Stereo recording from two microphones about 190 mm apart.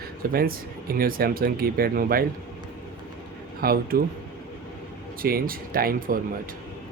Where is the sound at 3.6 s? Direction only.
50° right (ahead or behind).